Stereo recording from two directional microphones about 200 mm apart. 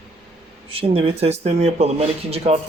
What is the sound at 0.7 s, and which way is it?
Speech, 30° right (ahead or behind).